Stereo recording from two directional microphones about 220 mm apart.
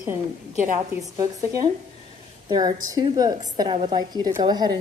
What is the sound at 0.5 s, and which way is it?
Speech, 35° right (ahead or behind).